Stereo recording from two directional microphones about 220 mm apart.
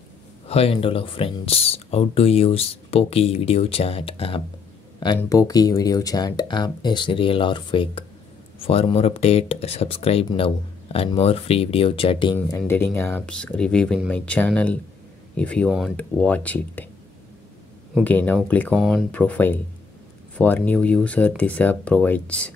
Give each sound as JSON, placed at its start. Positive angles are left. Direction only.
{"t": 0.5, "sound": "speech", "side_deg": 25}
{"t": 12.4, "sound": "speech", "side_deg": 10}
{"t": 17.9, "sound": "speech", "side_deg": 5}